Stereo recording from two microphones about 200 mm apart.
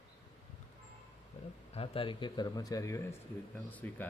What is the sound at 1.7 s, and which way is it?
Speech, 30° left (ahead or behind).